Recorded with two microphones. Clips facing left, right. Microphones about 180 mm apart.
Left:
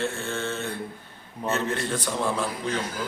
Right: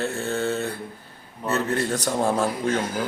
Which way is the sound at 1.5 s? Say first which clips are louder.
Right 3 dB; 40° right (ahead or behind).